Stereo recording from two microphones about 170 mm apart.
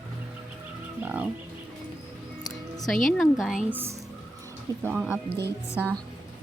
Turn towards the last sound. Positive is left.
turn(degrees=15)  # may be behind; listen again after turning